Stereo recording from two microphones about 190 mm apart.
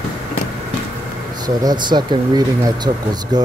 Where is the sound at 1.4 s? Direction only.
20° right (ahead or behind).